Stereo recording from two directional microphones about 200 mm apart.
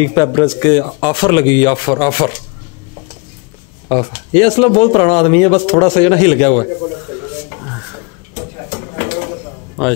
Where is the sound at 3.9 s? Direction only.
25° left (ahead or behind).